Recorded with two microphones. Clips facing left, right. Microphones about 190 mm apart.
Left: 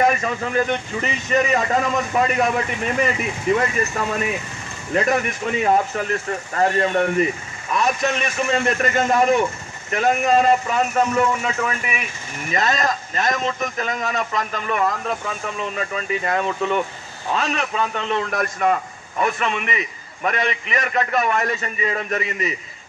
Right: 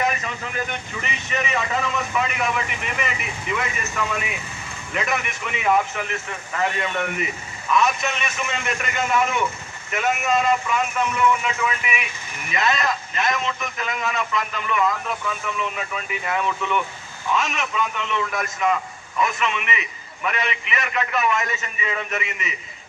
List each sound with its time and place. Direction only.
0.0 s speech: 40° left (ahead or behind)